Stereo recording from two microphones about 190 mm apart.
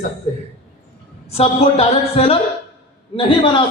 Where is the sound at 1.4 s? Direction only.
30° left (ahead or behind).